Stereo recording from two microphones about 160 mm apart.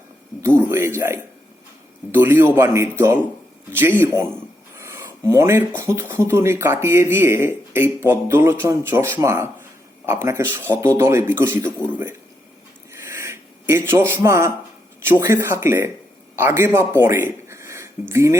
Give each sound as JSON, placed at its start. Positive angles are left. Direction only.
{"t": 0.4, "sound": "speech", "side_deg": -15}
{"t": 12.9, "sound": "a sound", "side_deg": -15}
{"t": 15.0, "sound": "speech", "side_deg": -15}